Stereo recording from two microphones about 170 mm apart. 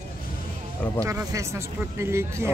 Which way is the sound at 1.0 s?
20° right (ahead or behind).